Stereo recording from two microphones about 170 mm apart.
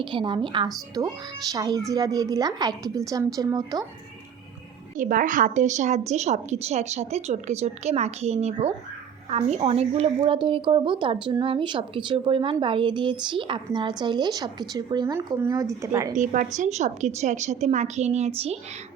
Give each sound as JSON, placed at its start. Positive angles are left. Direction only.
{"t": 0.0, "sound": "a woman's voice", "side_deg": -30}
{"t": 4.9, "sound": "a woman's voice", "side_deg": -50}
{"t": 16.1, "sound": "a woman's voice", "side_deg": -50}